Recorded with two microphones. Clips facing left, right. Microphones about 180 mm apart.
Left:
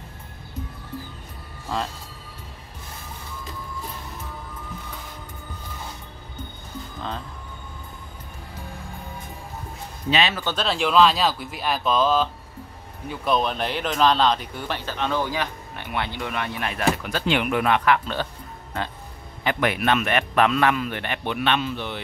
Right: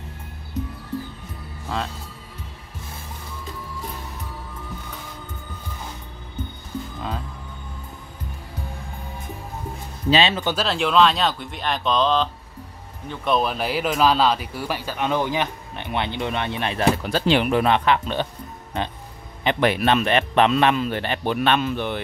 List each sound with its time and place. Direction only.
10.0 s speech: 30° right (ahead or behind)
10.4 s speech: 5° right (ahead or behind)
19.4 s a man's voice: 30° right (ahead or behind); by 22.0 s 50° right (ahead or behind)